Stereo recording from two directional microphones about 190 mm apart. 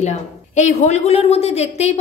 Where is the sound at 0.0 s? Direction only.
40° left (ahead or behind).